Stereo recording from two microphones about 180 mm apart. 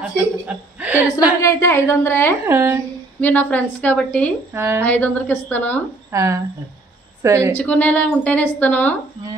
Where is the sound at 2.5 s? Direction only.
10° right (ahead or behind).